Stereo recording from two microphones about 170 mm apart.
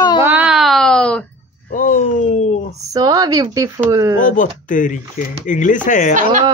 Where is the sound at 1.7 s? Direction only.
50° left (ahead or behind).